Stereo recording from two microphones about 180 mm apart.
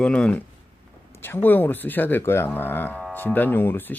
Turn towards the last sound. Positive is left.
turn(degrees=10)  # may be behind; listen again after turning